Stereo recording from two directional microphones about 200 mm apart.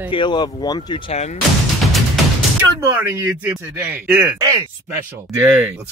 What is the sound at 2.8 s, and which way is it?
Speech, 10° right (ahead or behind).